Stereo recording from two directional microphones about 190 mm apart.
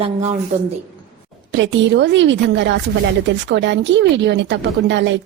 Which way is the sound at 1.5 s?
70° right (ahead or behind).